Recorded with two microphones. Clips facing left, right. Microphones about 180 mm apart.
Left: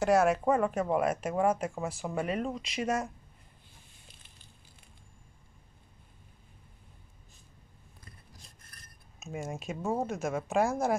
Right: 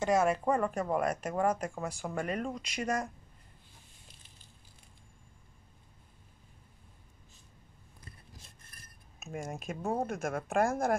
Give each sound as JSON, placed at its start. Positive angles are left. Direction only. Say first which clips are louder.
{"t": 0.0, "sound": "speech", "louder": "left 3 dB", "side_deg": 5}
{"t": 9.3, "sound": "speech", "louder": "left 2 dB", "side_deg": 5}
{"t": 10.0, "sound": "a woman's voice", "louder": "left 2 dB", "side_deg": -55}